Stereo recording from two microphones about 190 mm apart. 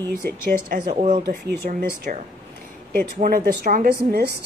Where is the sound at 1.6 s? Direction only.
45° right (ahead or behind).